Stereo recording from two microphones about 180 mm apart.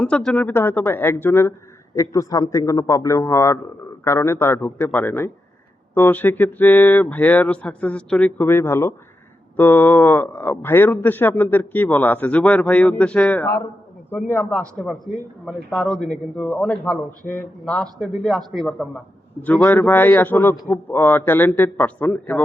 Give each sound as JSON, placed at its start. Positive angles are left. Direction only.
{"t": 0.0, "sound": "a man's voice", "side_deg": 5}
{"t": 15.0, "sound": "a man's voice", "side_deg": 0}